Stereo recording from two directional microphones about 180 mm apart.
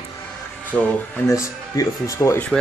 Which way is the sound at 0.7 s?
10° left (ahead or behind).